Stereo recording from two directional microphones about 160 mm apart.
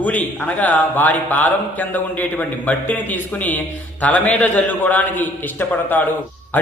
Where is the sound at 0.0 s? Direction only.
10° left (ahead or behind).